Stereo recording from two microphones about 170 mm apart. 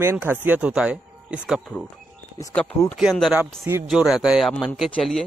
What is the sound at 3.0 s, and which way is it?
Speech, centre (ahead or behind).